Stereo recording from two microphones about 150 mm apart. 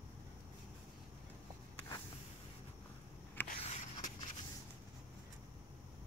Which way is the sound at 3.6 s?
50° left (ahead or behind).